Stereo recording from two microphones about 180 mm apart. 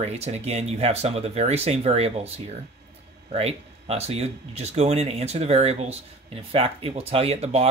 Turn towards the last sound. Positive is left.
turn(degrees=-35)  # may be behind; listen again after turning